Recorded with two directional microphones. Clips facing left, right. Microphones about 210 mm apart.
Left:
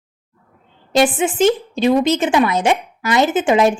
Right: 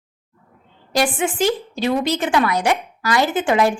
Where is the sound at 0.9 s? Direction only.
20° left (ahead or behind).